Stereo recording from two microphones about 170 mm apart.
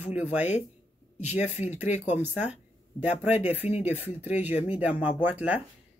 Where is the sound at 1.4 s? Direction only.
40° left (ahead or behind).